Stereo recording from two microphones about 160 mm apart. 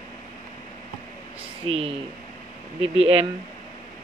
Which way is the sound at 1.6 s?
40° right (ahead or behind).